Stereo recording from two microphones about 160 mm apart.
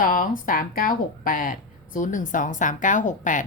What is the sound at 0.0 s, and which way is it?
A woman's voice, 60° left (ahead or behind).